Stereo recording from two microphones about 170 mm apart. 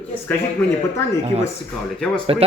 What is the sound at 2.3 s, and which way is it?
Speech, 35° right (ahead or behind).